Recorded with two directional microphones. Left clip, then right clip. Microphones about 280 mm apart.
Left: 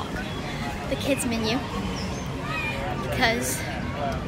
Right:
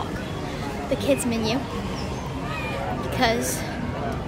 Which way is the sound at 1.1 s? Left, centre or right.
Centre.